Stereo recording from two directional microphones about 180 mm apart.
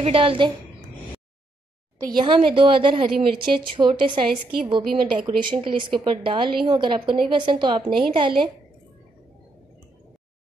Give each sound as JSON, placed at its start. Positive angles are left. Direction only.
{"t": 0.0, "sound": "a woman's voice", "side_deg": -30}
{"t": 2.0, "sound": "a woman's voice", "side_deg": -25}